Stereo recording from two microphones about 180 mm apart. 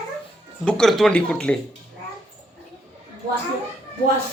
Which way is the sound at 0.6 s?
Centre (ahead or behind).